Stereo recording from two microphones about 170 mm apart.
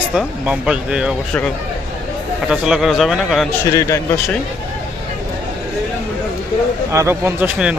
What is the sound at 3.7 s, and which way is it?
Speech, 20° left (ahead or behind).